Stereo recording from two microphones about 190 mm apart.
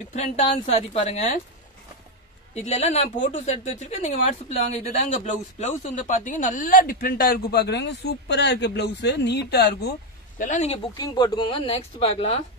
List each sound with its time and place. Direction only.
0.1 s speech: 35° left (ahead or behind)
2.5 s speech: 35° left (ahead or behind); by 9.9 s 60° left (ahead or behind)
10.4 s speech: 40° left (ahead or behind)
11.0 s speech: 20° left (ahead or behind)